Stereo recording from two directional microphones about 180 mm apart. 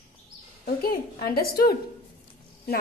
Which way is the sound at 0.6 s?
55° left (ahead or behind).